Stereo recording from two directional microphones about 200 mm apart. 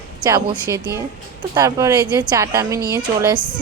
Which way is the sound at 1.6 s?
15° right (ahead or behind).